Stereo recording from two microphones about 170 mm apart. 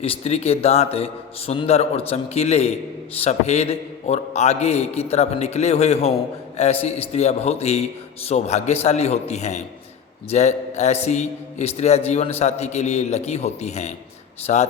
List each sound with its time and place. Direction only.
0.0 s a man's voice: 35° left (ahead or behind)